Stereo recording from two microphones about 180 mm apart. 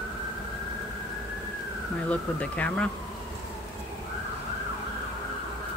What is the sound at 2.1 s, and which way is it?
Speech, 5° left (ahead or behind).